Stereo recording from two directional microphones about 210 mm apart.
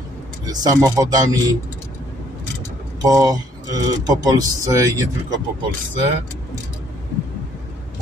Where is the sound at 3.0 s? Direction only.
20° right (ahead or behind).